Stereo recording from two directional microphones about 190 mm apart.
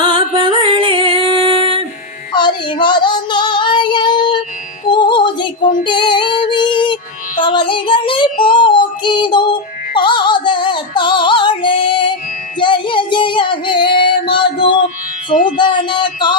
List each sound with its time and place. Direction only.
0.0 s music: 25° right (ahead or behind)
2.3 s child singing: 25° left (ahead or behind)
4.9 s female singing: 25° left (ahead or behind)
7.4 s child singing: 25° left (ahead or behind)
8.4 s music: 25° left (ahead or behind)
12.5 s child singing: 25° left (ahead or behind)
15.3 s music: 40° left (ahead or behind)
15.5 s a sound: 25° left (ahead or behind)